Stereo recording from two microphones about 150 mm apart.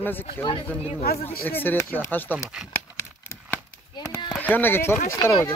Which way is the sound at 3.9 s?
20° left (ahead or behind).